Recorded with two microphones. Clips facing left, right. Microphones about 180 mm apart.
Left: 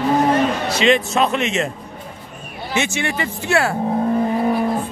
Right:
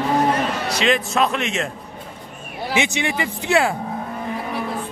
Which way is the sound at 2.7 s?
15° right (ahead or behind).